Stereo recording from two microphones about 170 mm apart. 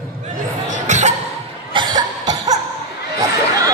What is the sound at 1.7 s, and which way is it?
Cough, 25° right (ahead or behind).